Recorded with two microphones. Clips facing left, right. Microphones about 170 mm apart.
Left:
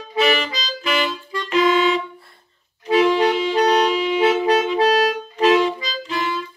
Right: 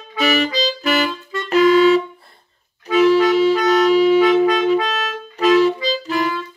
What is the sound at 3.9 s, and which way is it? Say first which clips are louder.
Saxophone: right 8 dB; 40° right (ahead or behind).